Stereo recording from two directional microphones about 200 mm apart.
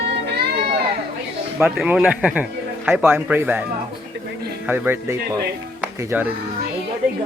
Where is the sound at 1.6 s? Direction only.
5° right (ahead or behind).